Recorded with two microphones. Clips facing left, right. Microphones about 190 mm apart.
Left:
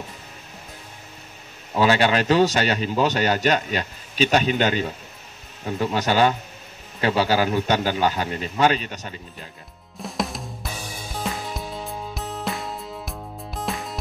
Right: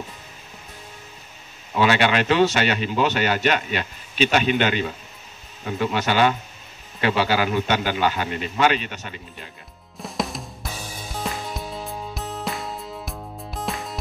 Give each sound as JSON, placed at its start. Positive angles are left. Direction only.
{"t": 1.8, "sound": "speech", "side_deg": 35}
{"t": 9.9, "sound": "music", "side_deg": 0}